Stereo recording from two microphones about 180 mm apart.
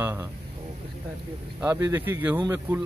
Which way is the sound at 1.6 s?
15° right (ahead or behind).